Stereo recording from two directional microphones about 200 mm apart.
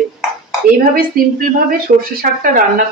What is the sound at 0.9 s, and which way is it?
Speech, 45° right (ahead or behind).